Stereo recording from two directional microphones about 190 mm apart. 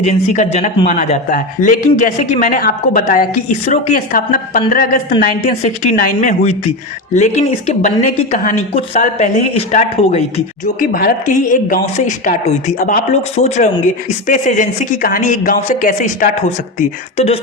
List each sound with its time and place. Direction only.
0.0 s a woman's voice: 35° left (ahead or behind)
7.7 s a woman's voice: 40° left (ahead or behind)
10.8 s a woman's voice: 50° left (ahead or behind); by 17.4 s 30° left (ahead or behind)